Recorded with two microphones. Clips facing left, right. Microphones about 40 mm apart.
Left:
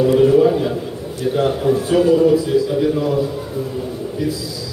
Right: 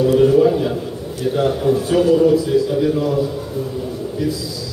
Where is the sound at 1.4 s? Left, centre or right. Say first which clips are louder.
Even; centre.